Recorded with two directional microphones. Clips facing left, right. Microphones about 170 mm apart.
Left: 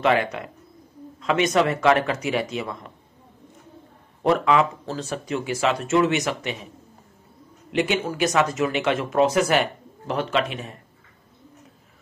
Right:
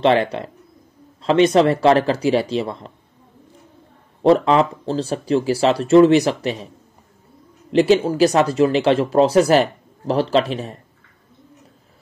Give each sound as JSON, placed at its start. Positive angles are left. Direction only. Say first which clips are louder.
{"t": 0.0, "sound": "speech", "louder": "right 5 dB", "side_deg": -30}
{"t": 4.2, "sound": "speech", "louder": "right 5 dB", "side_deg": -30}
{"t": 7.7, "sound": "speech", "louder": "right 9 dB", "side_deg": -35}